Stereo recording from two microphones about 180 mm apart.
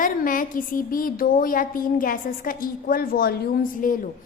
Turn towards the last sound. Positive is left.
turn(degrees=50)  # may be behind; listen again after turning